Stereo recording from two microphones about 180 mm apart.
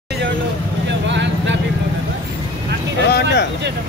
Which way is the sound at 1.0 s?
80° right.